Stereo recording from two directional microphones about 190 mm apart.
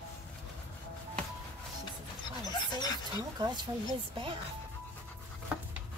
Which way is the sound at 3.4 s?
20° right (ahead or behind).